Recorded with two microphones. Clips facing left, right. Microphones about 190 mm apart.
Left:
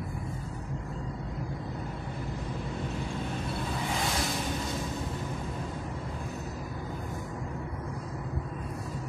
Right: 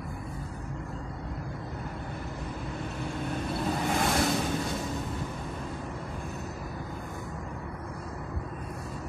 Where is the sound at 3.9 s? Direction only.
55° right (ahead or behind).